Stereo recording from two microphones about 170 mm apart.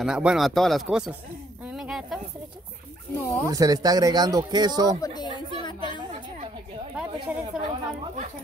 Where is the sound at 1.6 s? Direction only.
5° right (ahead or behind).